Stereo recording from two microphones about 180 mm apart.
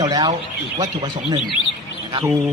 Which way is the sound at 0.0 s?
20° right (ahead or behind).